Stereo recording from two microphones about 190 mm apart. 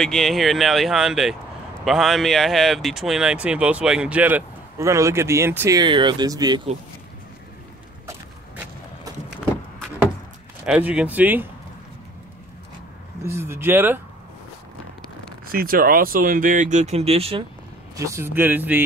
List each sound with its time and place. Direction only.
0.0 s speech: centre (ahead or behind); by 6.7 s 20° right (ahead or behind)
8.1 s a sound: 15° right (ahead or behind)
10.6 s speech: 5° right (ahead or behind)
13.2 s speech: 15° right (ahead or behind)
15.5 s speech: 50° right (ahead or behind); by 17.5 s 30° right (ahead or behind)
17.9 s speech: 15° right (ahead or behind)